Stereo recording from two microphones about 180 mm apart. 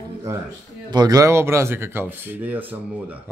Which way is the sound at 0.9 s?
20° right (ahead or behind).